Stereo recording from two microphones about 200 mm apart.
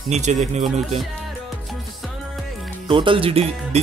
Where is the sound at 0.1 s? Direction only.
35° right (ahead or behind).